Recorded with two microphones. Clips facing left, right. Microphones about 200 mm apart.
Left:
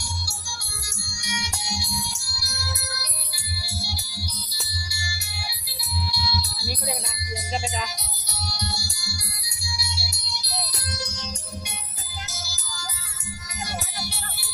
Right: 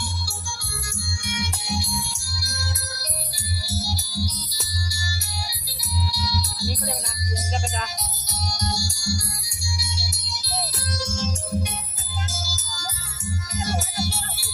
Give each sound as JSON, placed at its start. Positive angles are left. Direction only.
{"t": 1.2, "sound": "music", "side_deg": -55}
{"t": 7.9, "sound": "music", "side_deg": -45}
{"t": 12.3, "sound": "music", "side_deg": -45}